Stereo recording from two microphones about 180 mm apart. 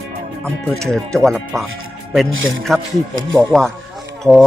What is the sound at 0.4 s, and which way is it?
Speech, centre (ahead or behind).